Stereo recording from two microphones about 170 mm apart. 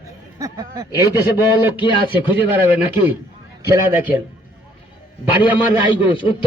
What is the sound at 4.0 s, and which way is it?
Speech, 10° right (ahead or behind).